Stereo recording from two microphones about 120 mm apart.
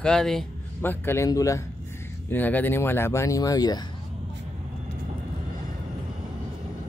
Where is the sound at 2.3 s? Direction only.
15° left (ahead or behind); by 3.8 s 30° left (ahead or behind).